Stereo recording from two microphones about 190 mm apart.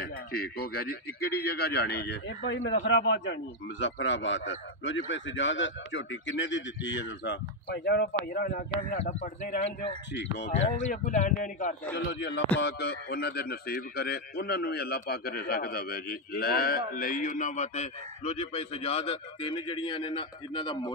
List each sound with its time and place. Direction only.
0.0 s a man's voice: 55° left (ahead or behind)
10.1 s a man's voice: 65° left (ahead or behind)
10.5 s a man's voice: 40° left (ahead or behind)
12.1 s a man's voice: 60° left (ahead or behind); by 20.9 s 25° left (ahead or behind)